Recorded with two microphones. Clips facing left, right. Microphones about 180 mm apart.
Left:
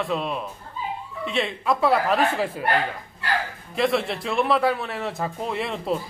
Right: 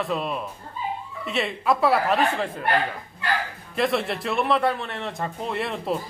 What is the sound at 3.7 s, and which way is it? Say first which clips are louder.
A man's voice: left 1 dB; centre (ahead or behind).